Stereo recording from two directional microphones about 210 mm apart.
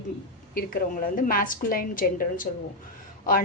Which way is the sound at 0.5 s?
45° left (ahead or behind).